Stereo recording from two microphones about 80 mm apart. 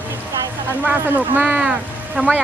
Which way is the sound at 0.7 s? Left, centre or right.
Right.